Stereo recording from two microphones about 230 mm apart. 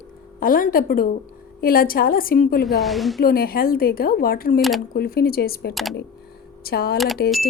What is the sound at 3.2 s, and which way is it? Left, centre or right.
A woman's voice, left.